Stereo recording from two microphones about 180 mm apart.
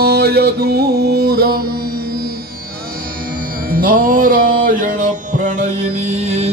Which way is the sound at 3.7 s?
50° right (ahead or behind).